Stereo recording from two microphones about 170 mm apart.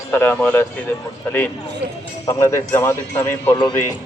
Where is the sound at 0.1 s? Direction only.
10° left (ahead or behind).